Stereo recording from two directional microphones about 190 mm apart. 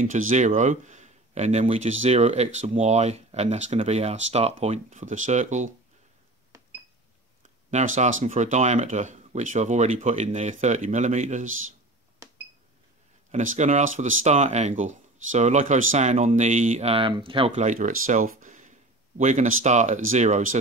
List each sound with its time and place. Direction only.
0.3 s speech: 40° right (ahead or behind)
7.7 s speech: 40° right (ahead or behind)
12.2 s a sound: 15° right (ahead or behind)
13.3 s speech: 40° right (ahead or behind)
17.5 s speech: 40° right (ahead or behind)